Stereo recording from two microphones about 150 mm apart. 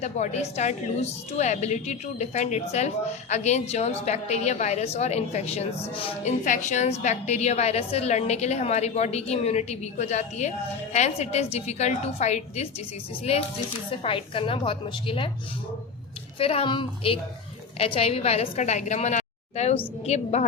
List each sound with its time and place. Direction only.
0.0 s a woman's voice: 50° left (ahead or behind)
6.4 s a woman's voice: 55° left (ahead or behind); by 15.3 s 35° left (ahead or behind)
16.4 s a woman's voice: 40° left (ahead or behind)